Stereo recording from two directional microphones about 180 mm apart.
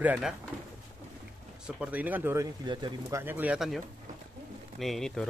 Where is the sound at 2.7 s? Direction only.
25° right (ahead or behind).